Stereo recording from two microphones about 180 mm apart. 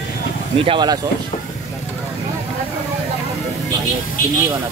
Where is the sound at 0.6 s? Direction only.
25° right (ahead or behind).